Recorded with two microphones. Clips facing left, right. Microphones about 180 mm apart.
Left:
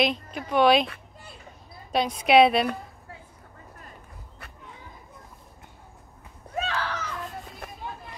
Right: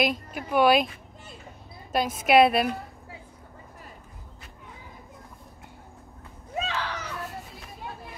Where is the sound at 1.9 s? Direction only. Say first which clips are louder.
Left 1 dB; 5° right (ahead or behind).